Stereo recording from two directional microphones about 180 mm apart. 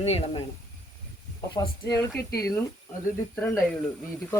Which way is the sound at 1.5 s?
20° left (ahead or behind).